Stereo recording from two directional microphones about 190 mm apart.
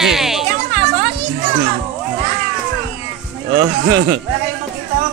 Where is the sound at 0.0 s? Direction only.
Centre (ahead or behind).